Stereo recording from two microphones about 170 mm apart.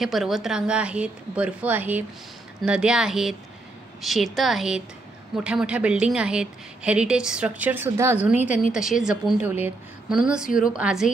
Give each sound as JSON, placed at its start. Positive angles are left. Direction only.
{"t": 0.0, "sound": "a woman's voice", "side_deg": 0}